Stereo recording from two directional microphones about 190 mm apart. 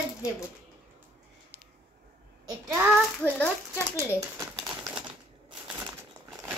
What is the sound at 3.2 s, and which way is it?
Speech, 10° left (ahead or behind).